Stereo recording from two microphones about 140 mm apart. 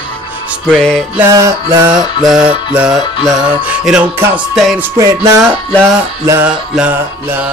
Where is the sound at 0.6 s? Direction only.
5° left (ahead or behind).